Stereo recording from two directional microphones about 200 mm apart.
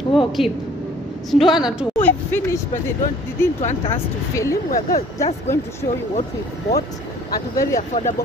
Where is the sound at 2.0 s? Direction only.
10° left (ahead or behind).